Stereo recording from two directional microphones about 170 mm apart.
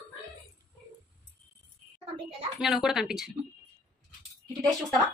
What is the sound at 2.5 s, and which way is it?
Speech, 5° right (ahead or behind).